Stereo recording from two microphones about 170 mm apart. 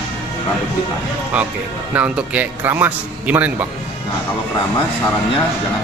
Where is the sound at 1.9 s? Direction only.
10° right (ahead or behind).